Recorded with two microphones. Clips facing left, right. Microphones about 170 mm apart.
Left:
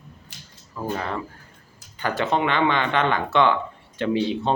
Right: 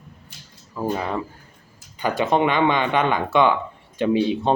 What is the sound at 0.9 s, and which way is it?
Speech, 15° right (ahead or behind).